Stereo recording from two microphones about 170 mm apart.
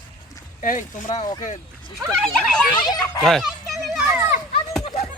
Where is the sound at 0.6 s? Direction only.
50° left (ahead or behind).